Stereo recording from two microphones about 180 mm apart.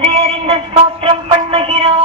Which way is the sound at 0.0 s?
35° right (ahead or behind).